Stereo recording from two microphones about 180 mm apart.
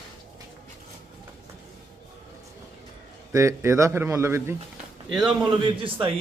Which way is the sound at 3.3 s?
15° right (ahead or behind).